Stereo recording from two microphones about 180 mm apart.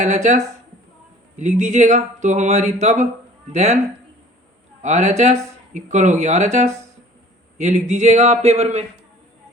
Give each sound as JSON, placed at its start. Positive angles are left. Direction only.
{"t": 0.0, "sound": "speech", "side_deg": -40}
{"t": 4.8, "sound": "speech", "side_deg": -40}